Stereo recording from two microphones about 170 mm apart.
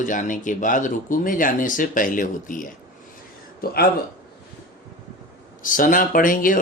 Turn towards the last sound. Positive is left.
turn(degrees=55)  # may be behind; listen again after turning